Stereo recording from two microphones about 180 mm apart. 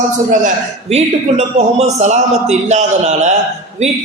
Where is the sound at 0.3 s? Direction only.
40° right (ahead or behind).